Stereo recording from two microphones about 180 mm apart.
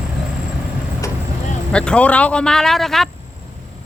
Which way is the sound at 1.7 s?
5° left (ahead or behind).